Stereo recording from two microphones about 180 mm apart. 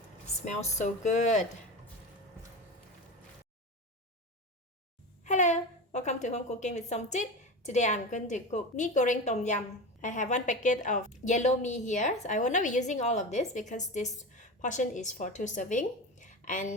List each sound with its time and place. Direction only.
0.4 s a woman's voice: 40° left (ahead or behind)
5.2 s a woman's voice: 40° left (ahead or behind)